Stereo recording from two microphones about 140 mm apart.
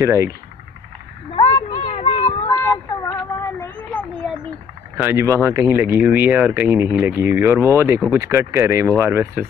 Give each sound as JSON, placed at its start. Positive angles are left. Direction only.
{"t": 0.0, "sound": "speech", "side_deg": -20}
{"t": 1.3, "sound": "a sound", "side_deg": 40}
{"t": 2.4, "sound": "child singing", "side_deg": 25}
{"t": 4.9, "sound": "speech", "side_deg": -15}